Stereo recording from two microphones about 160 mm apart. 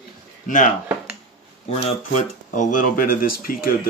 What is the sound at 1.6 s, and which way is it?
Speech, 45° left (ahead or behind).